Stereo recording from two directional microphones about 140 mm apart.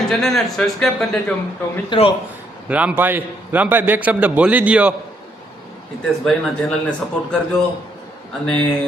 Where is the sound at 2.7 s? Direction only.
10° right (ahead or behind).